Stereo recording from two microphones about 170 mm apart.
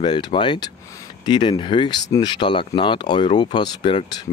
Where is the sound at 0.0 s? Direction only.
25° left (ahead or behind).